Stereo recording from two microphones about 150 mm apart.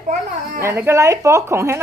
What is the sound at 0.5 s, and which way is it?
A woman's voice, 15° right (ahead or behind).